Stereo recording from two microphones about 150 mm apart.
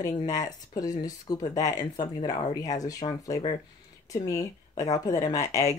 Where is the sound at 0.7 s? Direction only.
25° left (ahead or behind).